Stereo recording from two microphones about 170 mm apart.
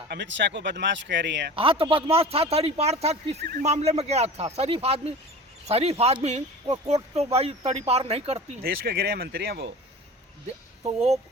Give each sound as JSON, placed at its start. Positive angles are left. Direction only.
{"t": 0.1, "sound": "speech", "side_deg": -90}
{"t": 1.5, "sound": "a man's voice", "side_deg": -30}
{"t": 8.6, "sound": "speech", "side_deg": -65}
{"t": 10.8, "sound": "a man's voice", "side_deg": -35}